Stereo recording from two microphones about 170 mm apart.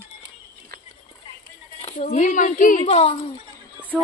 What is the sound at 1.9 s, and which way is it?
Speech, 45° left (ahead or behind).